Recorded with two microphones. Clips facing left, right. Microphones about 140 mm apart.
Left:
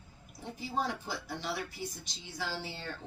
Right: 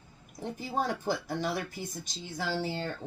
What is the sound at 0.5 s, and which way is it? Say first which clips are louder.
Speech: right 2 dB; 45° right (ahead or behind).